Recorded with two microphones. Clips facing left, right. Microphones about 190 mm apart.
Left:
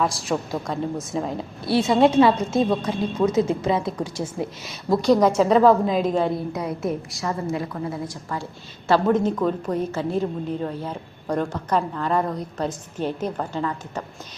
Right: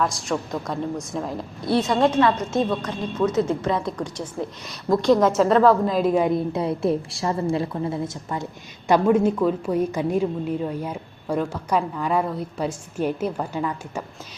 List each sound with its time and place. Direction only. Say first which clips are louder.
0.0 s a woman's voice: left 1 dB; centre (ahead or behind)
6.3 s a woman's voice: right 4 dB; 25° right (ahead or behind)
8.9 s a woman's voice: right 1 dB; 10° right (ahead or behind)